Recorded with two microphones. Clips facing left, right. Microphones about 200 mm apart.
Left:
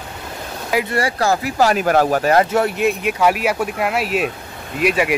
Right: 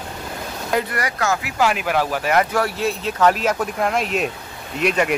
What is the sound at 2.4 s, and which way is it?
Speech, 25° left (ahead or behind).